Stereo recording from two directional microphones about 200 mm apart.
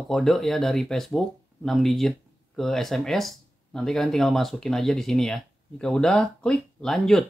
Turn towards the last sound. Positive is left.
turn(degrees=0)  # may be behind; listen again after turning